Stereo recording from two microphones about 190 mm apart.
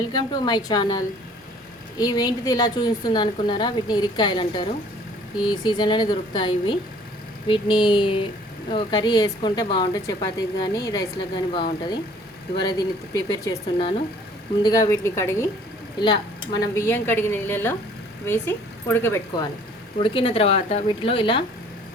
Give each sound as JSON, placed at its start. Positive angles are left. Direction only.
{"t": 0.1, "sound": "a woman's voice", "side_deg": 20}
{"t": 20.0, "sound": "speech", "side_deg": 25}